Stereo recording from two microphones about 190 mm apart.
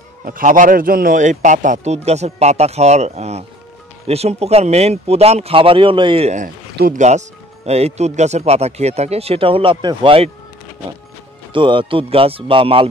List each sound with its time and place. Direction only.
0.2 s speech: 45° right (ahead or behind); by 10.3 s 30° right (ahead or behind)
11.5 s speech: 25° right (ahead or behind)